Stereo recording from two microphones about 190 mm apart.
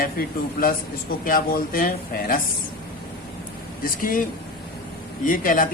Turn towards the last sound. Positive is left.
turn(degrees=45)  # may be behind; listen again after turning